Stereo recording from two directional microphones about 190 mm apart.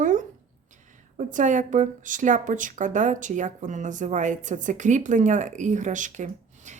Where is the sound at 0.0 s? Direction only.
45° right (ahead or behind).